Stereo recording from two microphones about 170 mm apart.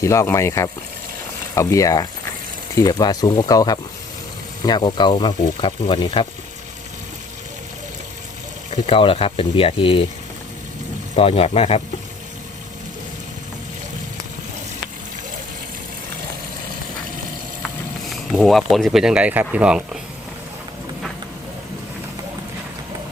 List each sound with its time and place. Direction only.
0.0 s speech: 15° left (ahead or behind)
8.7 s speech: 30° left (ahead or behind)
11.1 s speech: 35° left (ahead or behind)
18.0 s speech: centre (ahead or behind)